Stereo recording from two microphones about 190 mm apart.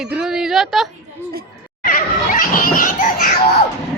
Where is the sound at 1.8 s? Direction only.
45° left (ahead or behind).